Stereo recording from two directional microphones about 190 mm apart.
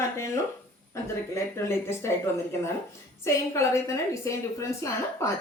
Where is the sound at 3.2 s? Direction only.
15° left (ahead or behind).